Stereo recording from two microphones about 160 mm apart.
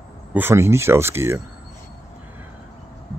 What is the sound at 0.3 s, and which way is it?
Speech, 15° right (ahead or behind).